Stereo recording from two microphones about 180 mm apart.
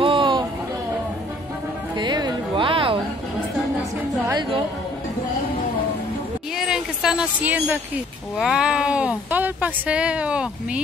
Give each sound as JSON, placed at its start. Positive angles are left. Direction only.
{"t": 0.0, "sound": "a sound", "side_deg": -30}
{"t": 2.0, "sound": "music", "side_deg": -25}
{"t": 4.3, "sound": "music", "side_deg": -25}
{"t": 6.5, "sound": "speech", "side_deg": 0}